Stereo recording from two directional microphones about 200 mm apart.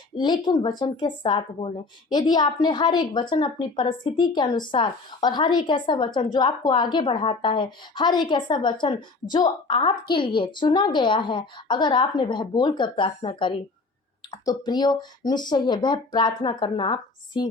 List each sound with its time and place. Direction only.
0.2 s speech: 20° left (ahead or behind)